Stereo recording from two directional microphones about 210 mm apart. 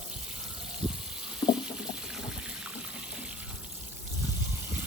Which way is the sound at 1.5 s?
5° right (ahead or behind).